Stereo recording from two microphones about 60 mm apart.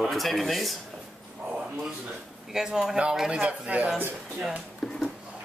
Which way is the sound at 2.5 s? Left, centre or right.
Centre.